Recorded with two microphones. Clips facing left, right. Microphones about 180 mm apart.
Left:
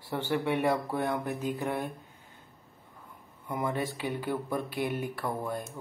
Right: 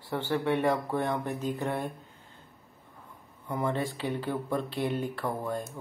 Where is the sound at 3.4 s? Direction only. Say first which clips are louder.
Right 1 dB; 10° left (ahead or behind).